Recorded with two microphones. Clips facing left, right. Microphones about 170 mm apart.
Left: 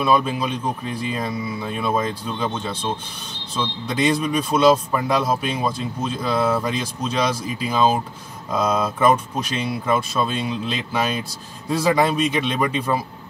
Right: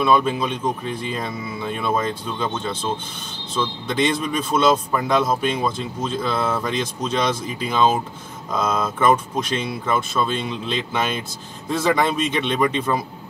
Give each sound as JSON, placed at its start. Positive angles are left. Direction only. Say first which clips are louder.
{"t": 0.0, "sound": "speech", "louder": "right 1 dB", "side_deg": 5}
{"t": 3.5, "sound": "speech", "louder": "right 1 dB", "side_deg": 5}